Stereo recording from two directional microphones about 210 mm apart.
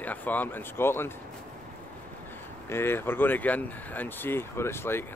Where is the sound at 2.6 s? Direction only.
10° left (ahead or behind).